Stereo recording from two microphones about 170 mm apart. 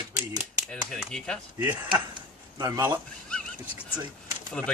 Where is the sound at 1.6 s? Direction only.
15° right (ahead or behind).